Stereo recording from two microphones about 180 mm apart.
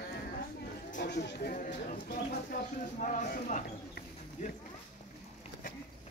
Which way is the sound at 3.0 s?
45° left (ahead or behind).